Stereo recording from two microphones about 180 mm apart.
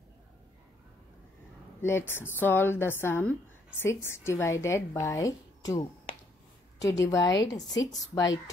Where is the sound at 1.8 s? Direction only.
15° left (ahead or behind).